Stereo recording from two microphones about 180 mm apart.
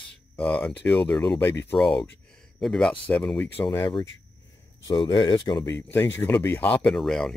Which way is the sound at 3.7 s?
25° left (ahead or behind).